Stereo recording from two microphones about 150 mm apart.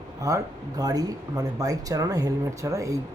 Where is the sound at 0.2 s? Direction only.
20° right (ahead or behind).